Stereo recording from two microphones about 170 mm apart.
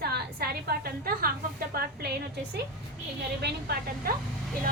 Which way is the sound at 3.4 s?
60° right (ahead or behind).